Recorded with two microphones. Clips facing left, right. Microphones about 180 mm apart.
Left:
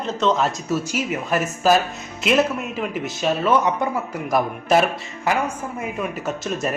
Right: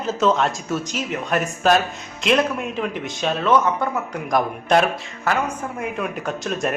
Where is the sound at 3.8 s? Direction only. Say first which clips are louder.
Left 1 dB; 15° left (ahead or behind).